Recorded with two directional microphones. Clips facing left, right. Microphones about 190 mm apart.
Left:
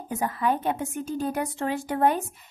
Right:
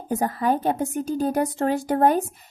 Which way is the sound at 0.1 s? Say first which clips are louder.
Right 4 dB; 40° right (ahead or behind).